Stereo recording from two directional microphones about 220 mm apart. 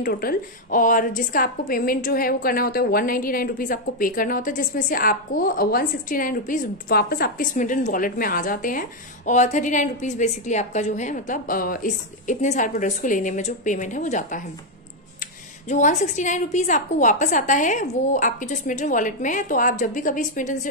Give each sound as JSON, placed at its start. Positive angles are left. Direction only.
{"t": 0.0, "sound": "a woman's voice", "side_deg": 40}
{"t": 15.7, "sound": "a woman's voice", "side_deg": 30}